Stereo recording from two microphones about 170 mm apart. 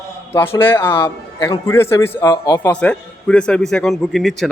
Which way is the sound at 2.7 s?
5° left (ahead or behind).